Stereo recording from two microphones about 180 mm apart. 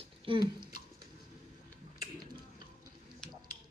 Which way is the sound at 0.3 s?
30° right (ahead or behind).